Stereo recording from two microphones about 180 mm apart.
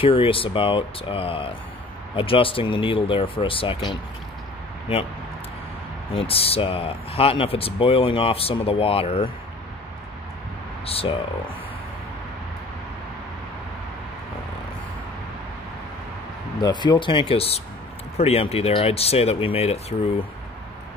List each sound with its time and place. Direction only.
0.0 s speech: 30° left (ahead or behind)
6.1 s speech: 30° left (ahead or behind)
10.9 s speech: 30° left (ahead or behind)
16.6 s speech: 25° left (ahead or behind)